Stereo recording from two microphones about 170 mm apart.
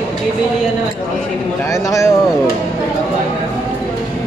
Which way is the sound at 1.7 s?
20° left (ahead or behind).